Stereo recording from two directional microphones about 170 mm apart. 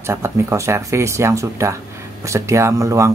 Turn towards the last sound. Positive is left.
turn(degrees=-20)  # may be behind; listen again after turning